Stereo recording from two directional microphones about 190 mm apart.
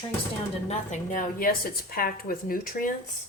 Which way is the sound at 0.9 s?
45° left (ahead or behind).